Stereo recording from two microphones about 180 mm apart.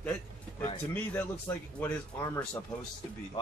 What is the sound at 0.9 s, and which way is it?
Speech, 10° left (ahead or behind).